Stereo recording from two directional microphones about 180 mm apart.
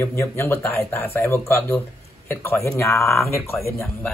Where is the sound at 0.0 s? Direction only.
15° left (ahead or behind).